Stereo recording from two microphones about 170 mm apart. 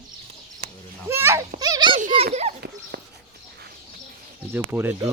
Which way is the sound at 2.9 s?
80° right.